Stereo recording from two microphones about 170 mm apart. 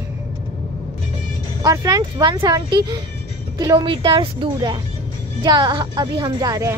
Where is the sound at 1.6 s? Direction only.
20° right (ahead or behind).